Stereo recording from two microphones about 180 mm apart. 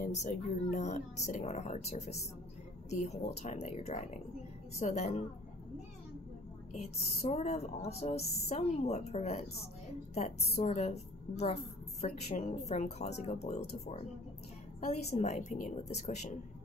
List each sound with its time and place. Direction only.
0.0 s a woman's voice: 40° left (ahead or behind)
6.7 s a woman's voice: 35° left (ahead or behind)